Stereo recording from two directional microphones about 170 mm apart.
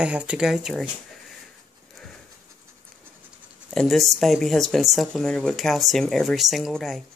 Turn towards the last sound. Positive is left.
turn(degrees=0)  # may be behind; listen again after turning